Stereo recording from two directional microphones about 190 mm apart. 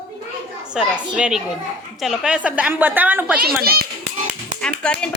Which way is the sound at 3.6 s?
55° right (ahead or behind).